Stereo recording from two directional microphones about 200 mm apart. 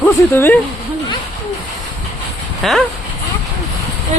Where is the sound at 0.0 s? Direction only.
10° left (ahead or behind).